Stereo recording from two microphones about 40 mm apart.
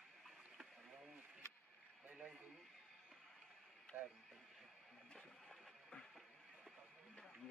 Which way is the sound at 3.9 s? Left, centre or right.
Right.